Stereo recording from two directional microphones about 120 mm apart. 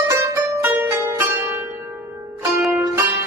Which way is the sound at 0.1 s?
25° right (ahead or behind).